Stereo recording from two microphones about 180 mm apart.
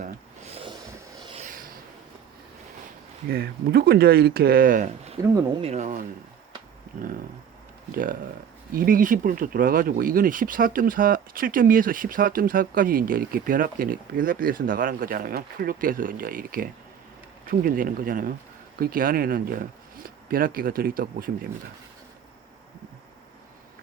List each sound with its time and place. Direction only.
0.0 s a sound: 35° right (ahead or behind)
1.2 s rub: 30° right (ahead or behind)
3.2 s speech: 60° right (ahead or behind); by 6.1 s 45° right (ahead or behind)
7.9 s speech: 50° right (ahead or behind)